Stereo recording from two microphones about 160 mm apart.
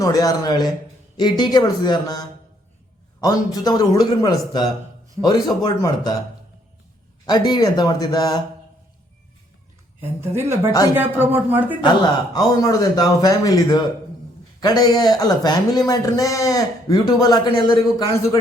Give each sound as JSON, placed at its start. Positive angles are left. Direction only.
{"t": 0.0, "sound": "a man's voice", "side_deg": 20}
{"t": 7.3, "sound": "a man's voice", "side_deg": 25}
{"t": 10.0, "sound": "speech", "side_deg": -15}
{"t": 10.7, "sound": "a man's voice", "side_deg": 20}
{"t": 10.9, "sound": "speech", "side_deg": -10}
{"t": 12.3, "sound": "a man's voice", "side_deg": 20}